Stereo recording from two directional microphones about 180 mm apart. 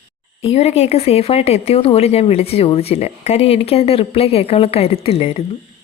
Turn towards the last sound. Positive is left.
turn(degrees=35)  # may be behind; listen again after turning